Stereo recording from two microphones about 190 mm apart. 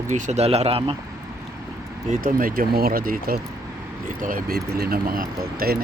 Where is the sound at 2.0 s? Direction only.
50° right (ahead or behind).